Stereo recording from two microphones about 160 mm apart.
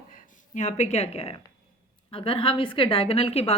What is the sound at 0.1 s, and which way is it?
Speech, 50° left (ahead or behind).